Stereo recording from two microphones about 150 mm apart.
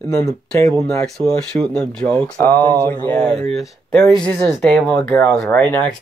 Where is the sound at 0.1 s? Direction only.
25° left (ahead or behind).